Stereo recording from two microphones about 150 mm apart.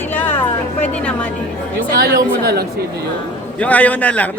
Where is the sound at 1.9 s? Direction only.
90° right.